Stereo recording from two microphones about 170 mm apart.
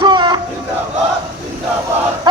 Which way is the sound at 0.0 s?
25° right (ahead or behind).